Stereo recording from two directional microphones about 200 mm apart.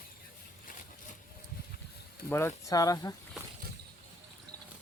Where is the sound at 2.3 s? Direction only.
10° left (ahead or behind).